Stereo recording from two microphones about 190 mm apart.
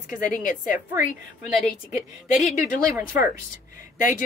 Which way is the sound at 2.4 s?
45° left (ahead or behind).